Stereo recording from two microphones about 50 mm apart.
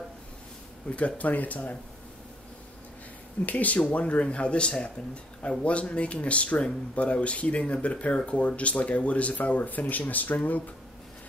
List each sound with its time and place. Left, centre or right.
0.8 s speech: left
3.4 s speech: left